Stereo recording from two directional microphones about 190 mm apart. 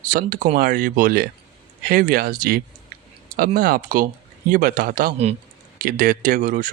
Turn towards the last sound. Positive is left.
turn(degrees=-45)  # may be behind; listen again after turning